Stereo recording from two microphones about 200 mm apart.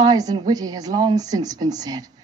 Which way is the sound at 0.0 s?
20° right (ahead or behind).